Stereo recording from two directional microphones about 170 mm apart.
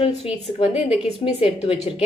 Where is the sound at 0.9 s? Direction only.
5° right (ahead or behind).